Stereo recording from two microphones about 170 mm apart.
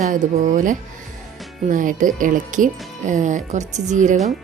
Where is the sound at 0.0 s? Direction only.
45° right (ahead or behind).